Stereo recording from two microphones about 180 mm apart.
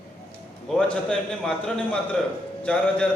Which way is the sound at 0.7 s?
5° left (ahead or behind).